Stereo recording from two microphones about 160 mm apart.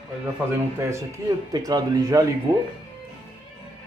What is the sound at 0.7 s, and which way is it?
Speech, 15° right (ahead or behind).